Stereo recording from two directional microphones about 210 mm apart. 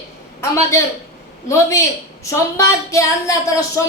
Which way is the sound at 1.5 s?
15° left (ahead or behind).